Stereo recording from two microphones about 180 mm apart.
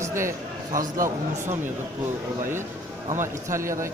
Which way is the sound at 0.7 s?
50° right (ahead or behind).